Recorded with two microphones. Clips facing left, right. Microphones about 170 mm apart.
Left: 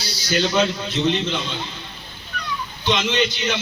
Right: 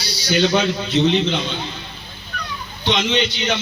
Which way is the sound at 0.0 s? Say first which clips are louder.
Right 4 dB; 65° right (ahead or behind).